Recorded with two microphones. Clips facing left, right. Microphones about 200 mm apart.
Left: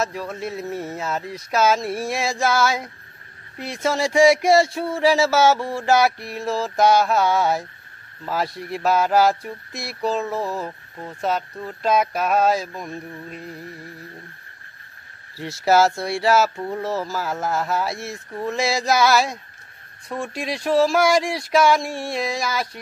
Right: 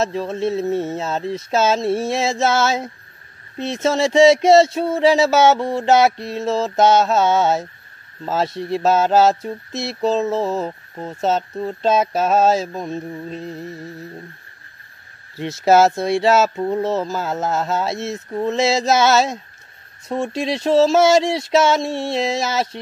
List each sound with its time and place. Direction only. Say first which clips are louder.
0.0 s speech: right 6 dB; 25° right (ahead or behind)
15.3 s speech: right 4 dB; 20° right (ahead or behind)